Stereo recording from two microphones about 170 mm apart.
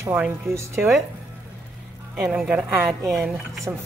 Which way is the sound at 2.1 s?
5° right (ahead or behind).